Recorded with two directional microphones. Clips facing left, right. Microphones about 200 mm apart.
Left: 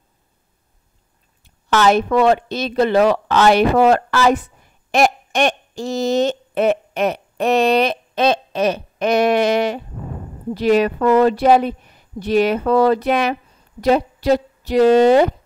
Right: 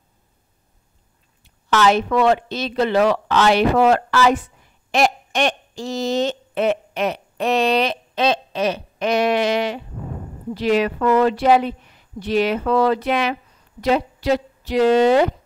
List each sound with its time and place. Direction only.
1.4 s a woman's voice: 45° left (ahead or behind)